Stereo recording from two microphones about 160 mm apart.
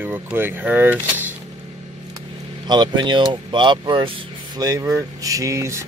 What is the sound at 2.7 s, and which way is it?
Speech, 25° right (ahead or behind).